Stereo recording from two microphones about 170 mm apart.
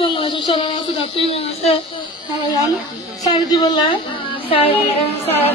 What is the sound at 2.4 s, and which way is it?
A woman's voice, 20° left (ahead or behind).